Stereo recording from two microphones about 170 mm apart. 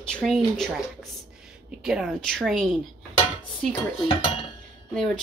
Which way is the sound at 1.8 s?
Centre (ahead or behind).